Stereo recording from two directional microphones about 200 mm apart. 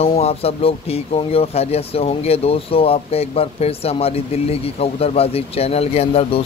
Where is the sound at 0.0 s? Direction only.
30° left (ahead or behind).